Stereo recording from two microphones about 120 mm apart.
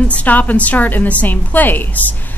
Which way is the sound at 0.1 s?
15° left (ahead or behind).